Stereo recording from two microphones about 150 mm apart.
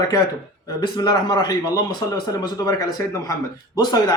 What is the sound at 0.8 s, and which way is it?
Speech, 30° left (ahead or behind).